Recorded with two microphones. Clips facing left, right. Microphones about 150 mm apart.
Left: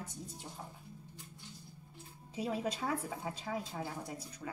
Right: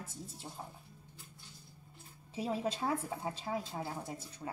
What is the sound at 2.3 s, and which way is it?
Speech, 30° right (ahead or behind).